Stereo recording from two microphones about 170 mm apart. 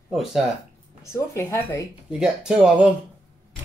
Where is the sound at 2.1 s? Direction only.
5° right (ahead or behind).